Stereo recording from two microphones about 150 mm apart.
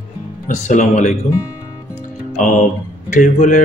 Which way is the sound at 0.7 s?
55° left (ahead or behind).